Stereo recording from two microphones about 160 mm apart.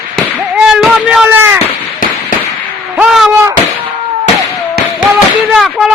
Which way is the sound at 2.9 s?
5° right (ahead or behind).